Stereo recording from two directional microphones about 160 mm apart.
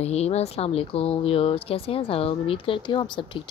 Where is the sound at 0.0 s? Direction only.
40° left (ahead or behind).